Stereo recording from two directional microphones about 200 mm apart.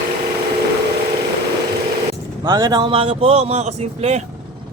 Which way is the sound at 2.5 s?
25° right (ahead or behind).